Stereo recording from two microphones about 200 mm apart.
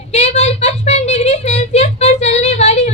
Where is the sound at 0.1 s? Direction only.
30° left (ahead or behind).